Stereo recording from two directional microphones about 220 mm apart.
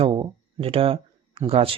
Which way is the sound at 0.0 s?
20° right (ahead or behind).